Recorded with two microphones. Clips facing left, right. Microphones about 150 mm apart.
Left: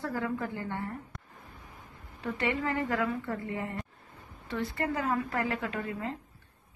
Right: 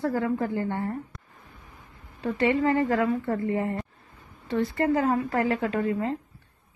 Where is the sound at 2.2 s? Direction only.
35° right (ahead or behind).